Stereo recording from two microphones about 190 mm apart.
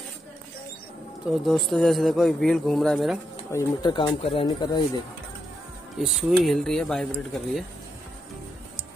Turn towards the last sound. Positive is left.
turn(degrees=0)  # may be behind; listen again after turning